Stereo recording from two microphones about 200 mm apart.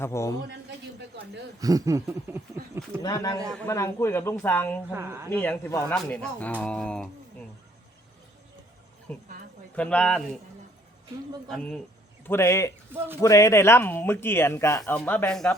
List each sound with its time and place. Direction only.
0.0 s speech: 15° left (ahead or behind)
1.5 s a sound: 20° right (ahead or behind)
3.0 s a man's voice: 20° left (ahead or behind)
4.9 s a sound: 10° right (ahead or behind)
5.3 s speech: 10° left (ahead or behind)
9.1 s a woman's voice: 10° left (ahead or behind)
11.4 s speech: 5° left (ahead or behind)